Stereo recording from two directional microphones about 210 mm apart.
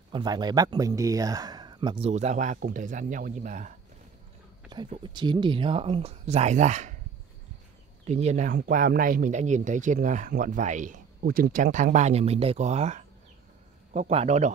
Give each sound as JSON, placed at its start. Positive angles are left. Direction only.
{"t": 0.1, "sound": "speech", "side_deg": -20}
{"t": 4.8, "sound": "speech", "side_deg": -25}
{"t": 8.1, "sound": "a man's voice", "side_deg": -30}